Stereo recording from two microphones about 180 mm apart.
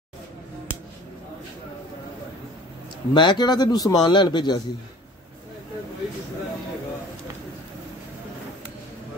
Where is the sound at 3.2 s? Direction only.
25° left (ahead or behind).